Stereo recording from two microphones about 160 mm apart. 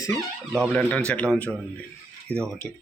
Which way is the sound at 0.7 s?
10° left (ahead or behind).